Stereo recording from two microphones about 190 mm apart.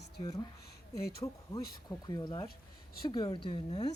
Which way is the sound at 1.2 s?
20° left (ahead or behind).